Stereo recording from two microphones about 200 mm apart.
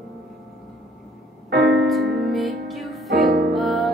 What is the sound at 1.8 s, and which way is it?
Music, centre (ahead or behind).